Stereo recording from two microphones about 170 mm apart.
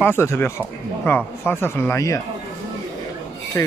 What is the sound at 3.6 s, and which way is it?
Speech, 20° left (ahead or behind).